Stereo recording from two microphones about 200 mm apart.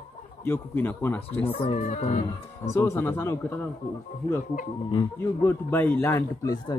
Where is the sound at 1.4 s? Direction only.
30° left (ahead or behind).